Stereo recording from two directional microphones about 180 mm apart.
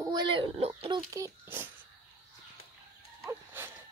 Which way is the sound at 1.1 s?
20° right (ahead or behind).